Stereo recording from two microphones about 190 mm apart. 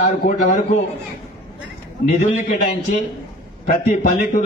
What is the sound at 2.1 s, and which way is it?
Speech, 45° left (ahead or behind).